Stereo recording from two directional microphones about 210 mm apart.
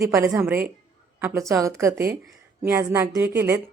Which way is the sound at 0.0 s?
15° right (ahead or behind).